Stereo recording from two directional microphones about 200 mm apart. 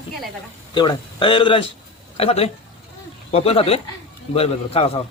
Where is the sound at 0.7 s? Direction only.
20° left (ahead or behind).